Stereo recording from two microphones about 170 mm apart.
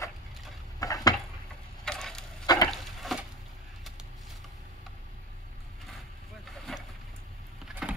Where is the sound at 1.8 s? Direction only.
5° left (ahead or behind).